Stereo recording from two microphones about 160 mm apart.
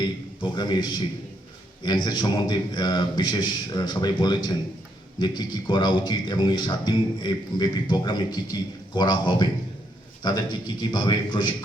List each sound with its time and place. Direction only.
0.0 s a man's voice: 30° left (ahead or behind)